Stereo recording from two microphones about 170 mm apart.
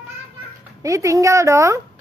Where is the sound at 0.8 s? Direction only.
20° right (ahead or behind).